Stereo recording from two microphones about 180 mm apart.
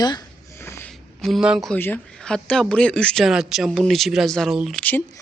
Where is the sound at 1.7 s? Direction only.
10° left (ahead or behind).